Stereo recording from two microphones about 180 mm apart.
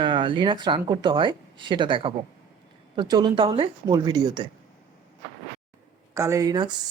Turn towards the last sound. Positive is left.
turn(degrees=-20)  # may be behind; listen again after turning